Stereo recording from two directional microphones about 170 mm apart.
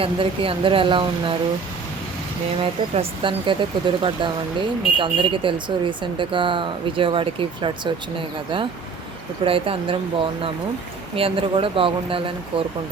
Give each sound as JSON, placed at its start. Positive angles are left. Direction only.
{"t": 0.0, "sound": "speech", "side_deg": -30}
{"t": 2.9, "sound": "speech", "side_deg": -30}
{"t": 9.4, "sound": "speech", "side_deg": -30}
{"t": 11.1, "sound": "speech", "side_deg": -30}